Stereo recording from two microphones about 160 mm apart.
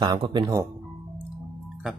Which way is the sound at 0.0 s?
30° right (ahead or behind).